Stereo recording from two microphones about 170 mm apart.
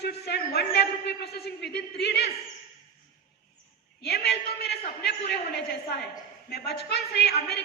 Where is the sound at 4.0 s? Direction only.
70° left (ahead or behind).